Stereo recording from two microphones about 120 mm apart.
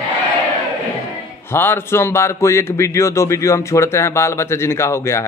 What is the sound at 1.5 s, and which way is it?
A man's voice, 20° left (ahead or behind).